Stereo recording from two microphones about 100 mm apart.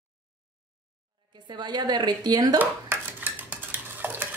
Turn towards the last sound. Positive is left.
turn(degrees=-20)  # may be behind; listen again after turning